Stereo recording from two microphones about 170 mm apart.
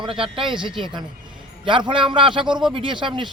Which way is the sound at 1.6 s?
30° right (ahead or behind).